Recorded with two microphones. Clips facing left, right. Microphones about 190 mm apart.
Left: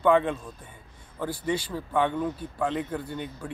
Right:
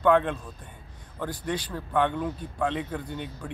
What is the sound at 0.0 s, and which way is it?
Speech, 10° left (ahead or behind).